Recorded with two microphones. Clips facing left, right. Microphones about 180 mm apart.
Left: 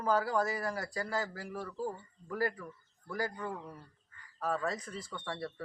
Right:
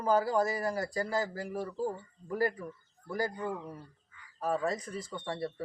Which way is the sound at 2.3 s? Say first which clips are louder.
Right 3 dB; 20° right (ahead or behind).